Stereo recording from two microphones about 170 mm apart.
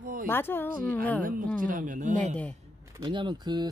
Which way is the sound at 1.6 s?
50° right (ahead or behind).